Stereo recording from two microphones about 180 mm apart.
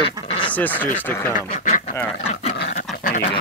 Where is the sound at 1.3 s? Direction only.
45° left (ahead or behind).